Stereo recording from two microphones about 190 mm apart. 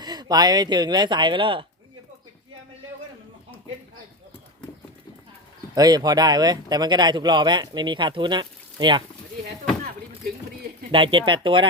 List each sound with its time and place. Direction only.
0.0 s speech: 20° right (ahead or behind)
5.7 s speech: 20° right (ahead or behind)
10.9 s speech: 25° right (ahead or behind)